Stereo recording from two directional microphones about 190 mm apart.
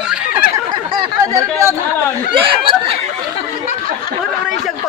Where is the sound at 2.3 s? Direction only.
25° right (ahead or behind).